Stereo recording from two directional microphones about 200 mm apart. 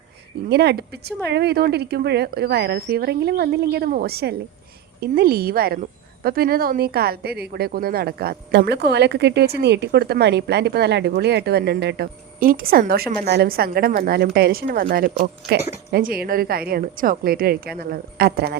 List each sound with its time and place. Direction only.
0.4 s a woman's voice: 55° right (ahead or behind)